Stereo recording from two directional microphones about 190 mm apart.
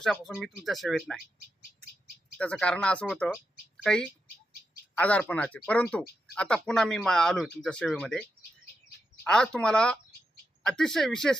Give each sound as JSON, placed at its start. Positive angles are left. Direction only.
{"t": 0.0, "sound": "speech", "side_deg": 0}
{"t": 2.4, "sound": "speech", "side_deg": 5}